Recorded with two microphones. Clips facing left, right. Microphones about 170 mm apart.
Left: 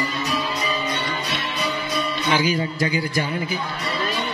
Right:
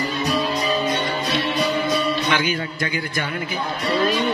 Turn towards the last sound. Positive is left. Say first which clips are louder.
# left 3 dB
turn(degrees=30)  # may be behind; listen again after turning